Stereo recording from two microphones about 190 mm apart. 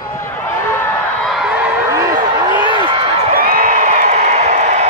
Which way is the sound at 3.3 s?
45° right (ahead or behind).